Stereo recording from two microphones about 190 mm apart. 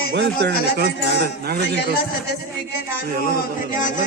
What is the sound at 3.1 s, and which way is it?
Speech, 45° right (ahead or behind).